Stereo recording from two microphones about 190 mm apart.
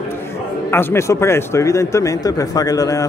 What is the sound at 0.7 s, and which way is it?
Speech, 15° left (ahead or behind).